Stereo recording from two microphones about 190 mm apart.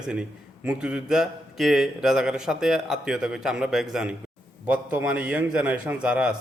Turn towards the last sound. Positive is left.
turn(degrees=-5)  # may be behind; listen again after turning